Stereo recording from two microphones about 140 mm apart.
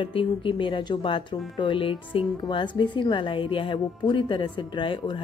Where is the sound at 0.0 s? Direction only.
40° left (ahead or behind).